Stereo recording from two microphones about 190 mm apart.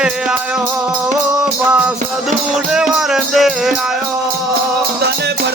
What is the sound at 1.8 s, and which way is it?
Music, 5° right (ahead or behind).